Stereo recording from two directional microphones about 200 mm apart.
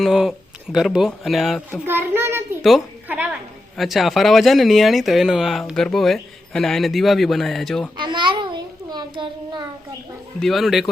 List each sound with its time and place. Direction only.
0.0 s speech: centre (ahead or behind)
1.9 s a sound: 10° right (ahead or behind)
3.8 s speech: centre (ahead or behind)
7.9 s child singing: 25° right (ahead or behind)
10.4 s speech: centre (ahead or behind)